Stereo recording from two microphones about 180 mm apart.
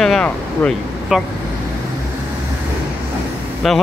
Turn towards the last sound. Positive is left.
turn(degrees=0)  # may be behind; listen again after turning